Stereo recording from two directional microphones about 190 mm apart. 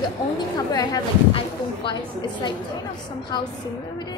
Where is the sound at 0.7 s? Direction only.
20° left (ahead or behind).